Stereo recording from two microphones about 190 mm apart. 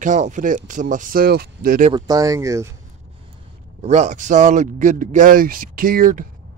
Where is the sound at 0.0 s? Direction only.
40° right (ahead or behind).